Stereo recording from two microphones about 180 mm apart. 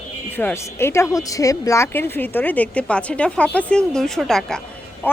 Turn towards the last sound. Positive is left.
turn(degrees=10)  # may be behind; listen again after turning